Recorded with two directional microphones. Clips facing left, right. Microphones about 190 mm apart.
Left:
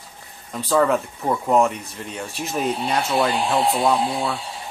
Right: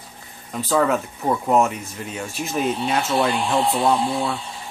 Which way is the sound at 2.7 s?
35° left (ahead or behind).